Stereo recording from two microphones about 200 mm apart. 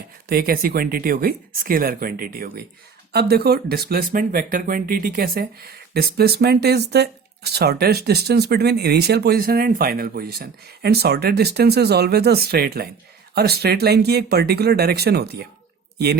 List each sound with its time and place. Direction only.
0.3 s speech: 50° right (ahead or behind)